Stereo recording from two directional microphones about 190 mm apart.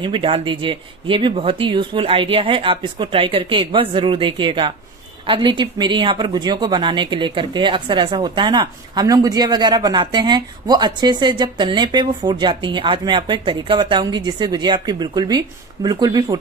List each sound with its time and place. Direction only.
0.0 s speech: 25° right (ahead or behind)